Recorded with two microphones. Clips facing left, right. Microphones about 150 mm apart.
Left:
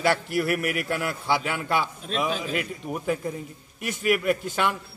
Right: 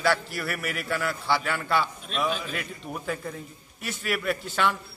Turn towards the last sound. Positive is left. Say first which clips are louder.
# left 2 dB
turn(degrees=10)  # may be behind; listen again after turning